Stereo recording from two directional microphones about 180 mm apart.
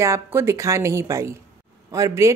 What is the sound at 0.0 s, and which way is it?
A woman's voice, 15° right (ahead or behind).